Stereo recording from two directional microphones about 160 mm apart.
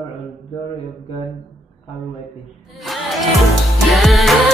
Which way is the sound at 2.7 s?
Centre (ahead or behind).